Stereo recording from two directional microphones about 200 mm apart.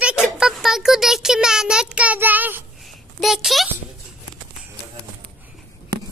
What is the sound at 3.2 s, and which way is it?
Speech, centre (ahead or behind).